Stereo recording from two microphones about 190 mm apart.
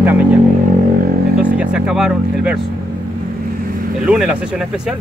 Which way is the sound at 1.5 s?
5° right (ahead or behind).